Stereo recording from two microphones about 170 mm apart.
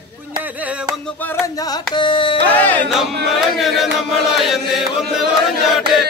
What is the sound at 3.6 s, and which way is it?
Chant, centre (ahead or behind).